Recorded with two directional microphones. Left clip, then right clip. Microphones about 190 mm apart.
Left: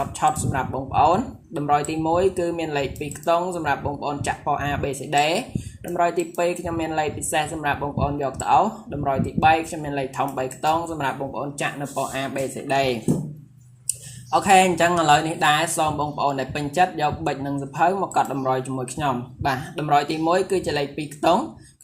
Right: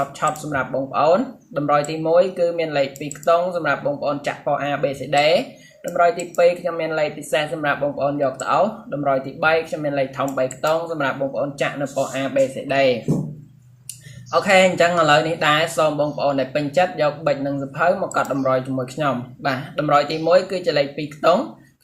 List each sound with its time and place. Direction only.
0.2 s speech: 30° left (ahead or behind)
14.3 s speech: 30° left (ahead or behind)